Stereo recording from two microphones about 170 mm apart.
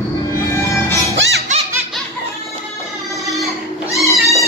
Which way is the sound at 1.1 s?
90° right.